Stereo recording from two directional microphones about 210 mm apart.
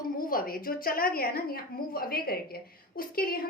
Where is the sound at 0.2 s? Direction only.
45° left (ahead or behind).